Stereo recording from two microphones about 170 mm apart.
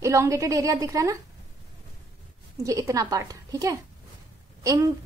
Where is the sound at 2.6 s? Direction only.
20° right (ahead or behind).